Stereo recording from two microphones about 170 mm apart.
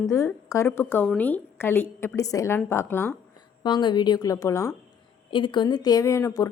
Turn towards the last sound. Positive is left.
turn(degrees=20)  # may be behind; listen again after turning